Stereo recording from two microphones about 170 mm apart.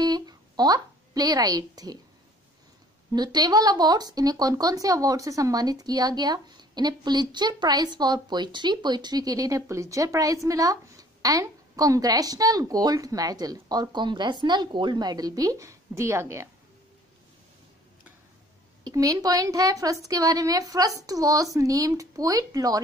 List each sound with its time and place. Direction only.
0.0 s a woman's voice: 25° right (ahead or behind)
3.1 s a woman's voice: 25° right (ahead or behind)
18.9 s a woman's voice: 20° right (ahead or behind)